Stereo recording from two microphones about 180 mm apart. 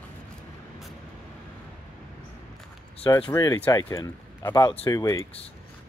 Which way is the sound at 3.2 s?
20° left (ahead or behind).